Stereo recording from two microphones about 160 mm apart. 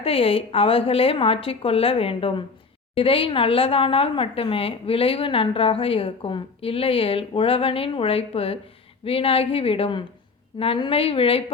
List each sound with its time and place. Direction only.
0.0 s a woman's voice: 35° left (ahead or behind)